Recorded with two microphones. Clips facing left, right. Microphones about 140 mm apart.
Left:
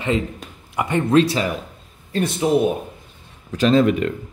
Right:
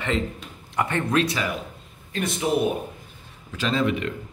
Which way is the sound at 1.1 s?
30° left (ahead or behind).